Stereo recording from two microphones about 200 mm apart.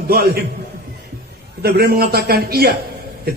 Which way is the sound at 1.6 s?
50° right (ahead or behind).